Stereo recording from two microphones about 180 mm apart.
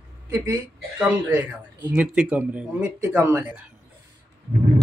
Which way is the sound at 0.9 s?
10° right (ahead or behind).